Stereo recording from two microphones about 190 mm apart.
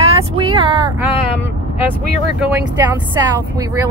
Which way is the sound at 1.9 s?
5° right (ahead or behind).